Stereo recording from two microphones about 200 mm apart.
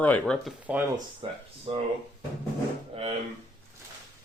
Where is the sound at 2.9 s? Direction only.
30° right (ahead or behind).